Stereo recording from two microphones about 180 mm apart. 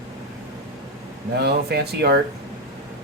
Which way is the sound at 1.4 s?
65° right (ahead or behind).